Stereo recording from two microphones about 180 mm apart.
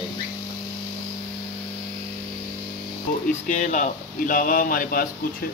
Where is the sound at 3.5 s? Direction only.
40° left (ahead or behind).